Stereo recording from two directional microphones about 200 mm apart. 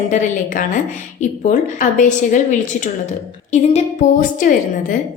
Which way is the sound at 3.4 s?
35° left (ahead or behind).